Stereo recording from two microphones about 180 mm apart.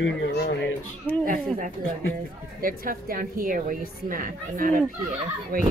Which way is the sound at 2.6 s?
50° right (ahead or behind).